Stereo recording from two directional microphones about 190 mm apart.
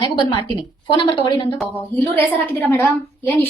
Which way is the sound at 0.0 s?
25° left (ahead or behind).